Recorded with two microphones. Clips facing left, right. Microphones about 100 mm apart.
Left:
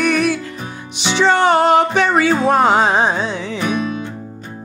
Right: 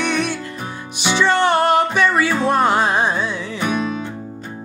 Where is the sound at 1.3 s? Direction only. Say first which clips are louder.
Left 4 dB; 15° left (ahead or behind).